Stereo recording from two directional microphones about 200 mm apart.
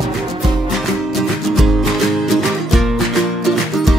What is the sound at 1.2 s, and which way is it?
Music, centre (ahead or behind).